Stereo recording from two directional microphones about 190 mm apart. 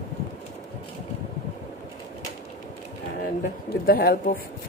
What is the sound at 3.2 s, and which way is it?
Speech, 50° left (ahead or behind).